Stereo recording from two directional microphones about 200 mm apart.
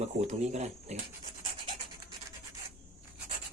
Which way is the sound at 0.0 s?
35° right (ahead or behind).